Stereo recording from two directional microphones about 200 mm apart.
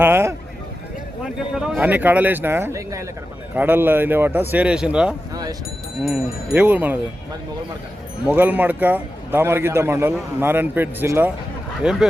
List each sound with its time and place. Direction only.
0.0 s a man's voice: 10° right (ahead or behind)
5.3 s a sound: 20° right (ahead or behind)
6.0 s a man's voice: centre (ahead or behind)
8.3 s a man's voice: 10° right (ahead or behind)